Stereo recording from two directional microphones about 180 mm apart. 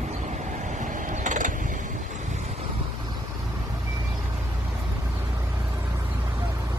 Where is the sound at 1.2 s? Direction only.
45° right (ahead or behind).